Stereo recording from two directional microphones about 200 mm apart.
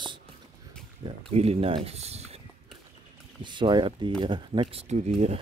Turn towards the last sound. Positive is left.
turn(degrees=-35)  # may be behind; listen again after turning